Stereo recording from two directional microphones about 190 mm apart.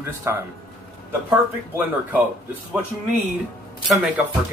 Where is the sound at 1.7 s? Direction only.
10° right (ahead or behind).